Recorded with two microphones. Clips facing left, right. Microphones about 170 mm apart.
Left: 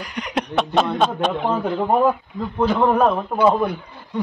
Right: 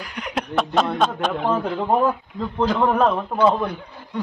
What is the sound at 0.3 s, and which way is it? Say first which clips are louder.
Speech: left 1 dB; centre (ahead or behind).